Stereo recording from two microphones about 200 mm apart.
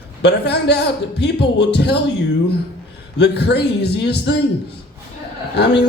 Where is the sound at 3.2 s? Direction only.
55° left (ahead or behind).